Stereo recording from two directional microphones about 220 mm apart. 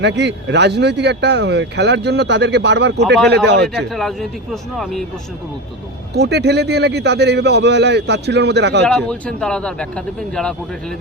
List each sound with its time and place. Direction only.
0.0 s speech: 50° right (ahead or behind)
3.9 s a man's voice: centre (ahead or behind)
6.1 s speech: 50° right (ahead or behind)
8.9 s a man's voice: 5° left (ahead or behind)